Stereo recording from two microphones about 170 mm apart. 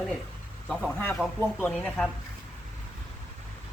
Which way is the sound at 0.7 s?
5° left (ahead or behind).